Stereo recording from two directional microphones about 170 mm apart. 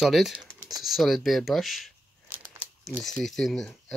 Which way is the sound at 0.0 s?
Centre (ahead or behind).